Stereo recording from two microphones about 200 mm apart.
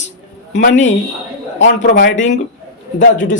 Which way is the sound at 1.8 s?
60° left (ahead or behind).